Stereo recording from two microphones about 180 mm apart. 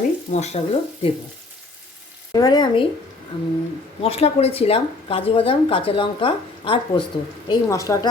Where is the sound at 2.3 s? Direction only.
20° left (ahead or behind).